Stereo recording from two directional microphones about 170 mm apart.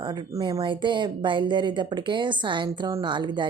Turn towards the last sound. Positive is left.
turn(degrees=-25)  # may be behind; listen again after turning